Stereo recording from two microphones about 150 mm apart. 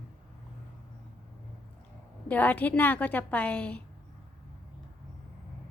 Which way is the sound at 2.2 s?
10° left (ahead or behind).